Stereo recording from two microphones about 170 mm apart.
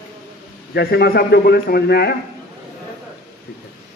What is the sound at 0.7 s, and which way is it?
A man's voice, 70° left (ahead or behind).